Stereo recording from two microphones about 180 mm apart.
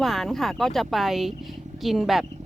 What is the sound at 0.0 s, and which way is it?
Speech, centre (ahead or behind).